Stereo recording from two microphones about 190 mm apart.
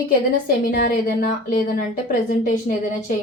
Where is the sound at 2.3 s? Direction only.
40° left (ahead or behind).